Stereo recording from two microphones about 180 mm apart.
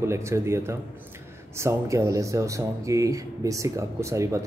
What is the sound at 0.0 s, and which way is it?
Speech, 15° right (ahead or behind).